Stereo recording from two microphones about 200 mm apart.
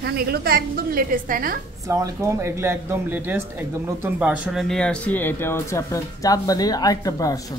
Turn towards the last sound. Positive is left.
turn(degrees=15)  # may be behind; listen again after turning